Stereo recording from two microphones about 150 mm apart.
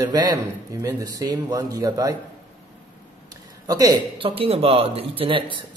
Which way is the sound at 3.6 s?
25° right (ahead or behind).